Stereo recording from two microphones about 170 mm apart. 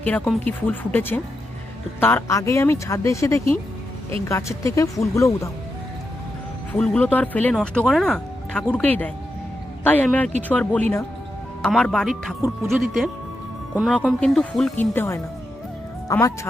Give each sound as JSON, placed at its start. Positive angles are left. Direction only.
{"t": 0.0, "sound": "speech", "side_deg": 10}
{"t": 6.7, "sound": "speech", "side_deg": 5}
{"t": 14.8, "sound": "speech", "side_deg": 15}